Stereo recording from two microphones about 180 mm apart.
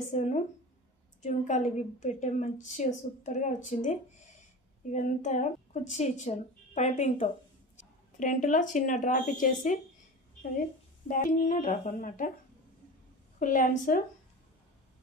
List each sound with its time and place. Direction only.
0.1 s a woman's voice: 40° left (ahead or behind)
11.1 s a woman's voice: 50° left (ahead or behind)
13.4 s a woman's voice: 50° left (ahead or behind)